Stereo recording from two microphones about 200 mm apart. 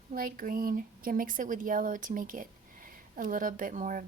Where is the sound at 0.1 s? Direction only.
45° right (ahead or behind).